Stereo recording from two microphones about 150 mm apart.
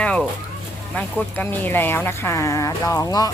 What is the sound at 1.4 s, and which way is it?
Speech, 15° left (ahead or behind).